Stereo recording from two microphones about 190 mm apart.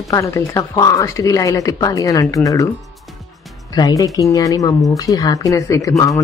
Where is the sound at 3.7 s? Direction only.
20° left (ahead or behind).